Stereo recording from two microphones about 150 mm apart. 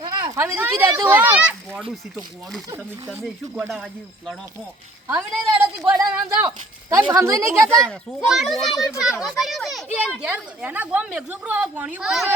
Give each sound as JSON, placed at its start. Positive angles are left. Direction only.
{"t": 0.3, "sound": "speech", "side_deg": -15}
{"t": 3.1, "sound": "a child's voice", "side_deg": 0}
{"t": 5.0, "sound": "a woman's voice", "side_deg": -15}
{"t": 7.7, "sound": "a child's voice", "side_deg": 5}